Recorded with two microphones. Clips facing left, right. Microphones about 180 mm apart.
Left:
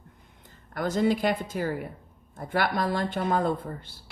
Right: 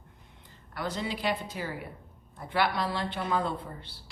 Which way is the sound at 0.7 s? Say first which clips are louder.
Left 9 dB; 50° left (ahead or behind).